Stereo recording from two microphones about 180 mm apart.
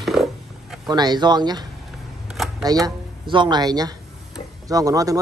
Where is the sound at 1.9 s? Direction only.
Centre (ahead or behind).